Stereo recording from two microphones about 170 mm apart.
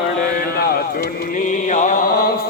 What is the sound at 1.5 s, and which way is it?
Mantra, 45° left (ahead or behind).